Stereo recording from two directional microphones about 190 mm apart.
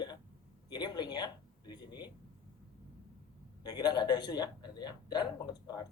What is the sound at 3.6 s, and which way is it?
Speech, 20° left (ahead or behind).